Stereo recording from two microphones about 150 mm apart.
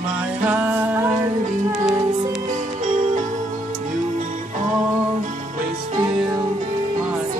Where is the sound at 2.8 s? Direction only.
55° right (ahead or behind).